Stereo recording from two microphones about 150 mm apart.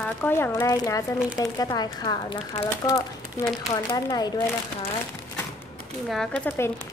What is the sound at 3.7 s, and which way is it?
Speech, 30° left (ahead or behind).